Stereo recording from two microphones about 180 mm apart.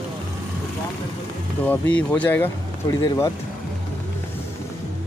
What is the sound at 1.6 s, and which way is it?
Speech, 10° left (ahead or behind).